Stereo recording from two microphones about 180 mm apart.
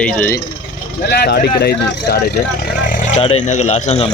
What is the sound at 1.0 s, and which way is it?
Speech, 65° left (ahead or behind).